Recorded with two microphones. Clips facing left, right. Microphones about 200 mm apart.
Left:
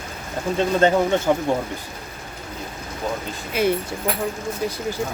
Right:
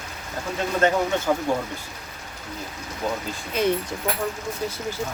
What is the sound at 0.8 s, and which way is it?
Speech, 30° left (ahead or behind).